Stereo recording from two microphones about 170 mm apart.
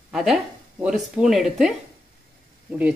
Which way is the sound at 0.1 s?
Centre (ahead or behind).